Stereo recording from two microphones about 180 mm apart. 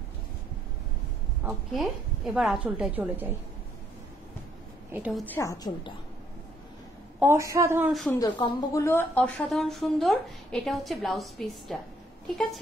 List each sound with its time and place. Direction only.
1.7 s a woman's voice: centre (ahead or behind)
4.9 s a woman's voice: 10° right (ahead or behind)
5.2 s a woman's voice: 15° left (ahead or behind)
7.2 s a woman's voice: 15° right (ahead or behind)
7.9 s a woman's voice: centre (ahead or behind)
8.2 s a woman's voice: 20° left (ahead or behind); by 11.8 s centre (ahead or behind)